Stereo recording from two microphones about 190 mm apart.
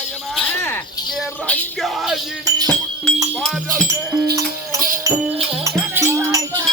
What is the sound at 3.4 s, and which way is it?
Speech, centre (ahead or behind).